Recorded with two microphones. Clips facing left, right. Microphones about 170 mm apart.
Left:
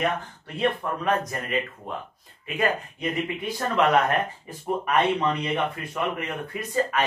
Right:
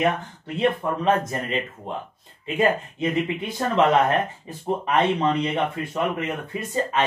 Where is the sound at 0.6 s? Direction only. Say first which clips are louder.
Right 3 dB; 25° right (ahead or behind).